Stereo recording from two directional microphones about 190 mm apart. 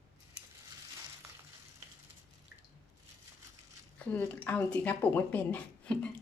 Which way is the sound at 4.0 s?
10° left (ahead or behind).